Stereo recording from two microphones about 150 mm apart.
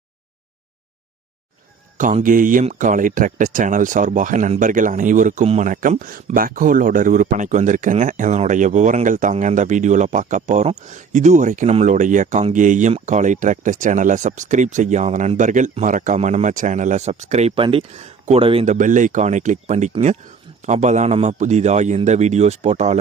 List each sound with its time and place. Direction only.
2.0 s speech: 60° right (ahead or behind); by 18.6 s 40° right (ahead or behind)
18.6 s a man's voice: 55° right (ahead or behind)